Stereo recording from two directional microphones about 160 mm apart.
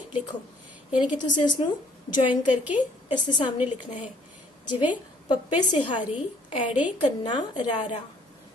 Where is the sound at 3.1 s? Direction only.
30° left (ahead or behind).